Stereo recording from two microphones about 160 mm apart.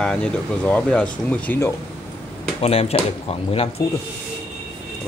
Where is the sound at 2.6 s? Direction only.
40° left (ahead or behind).